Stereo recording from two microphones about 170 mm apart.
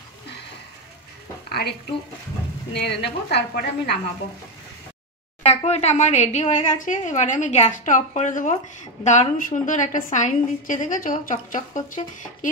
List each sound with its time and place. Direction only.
1.5 s a sound: 70° left (ahead or behind)
2.7 s a woman's voice: 80° left
5.4 s a woman's voice: 40° left (ahead or behind)